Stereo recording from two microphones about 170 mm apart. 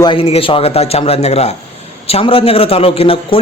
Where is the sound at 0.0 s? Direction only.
30° left (ahead or behind).